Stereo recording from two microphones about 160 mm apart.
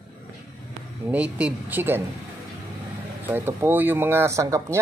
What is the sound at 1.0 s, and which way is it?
Speech, 10° right (ahead or behind).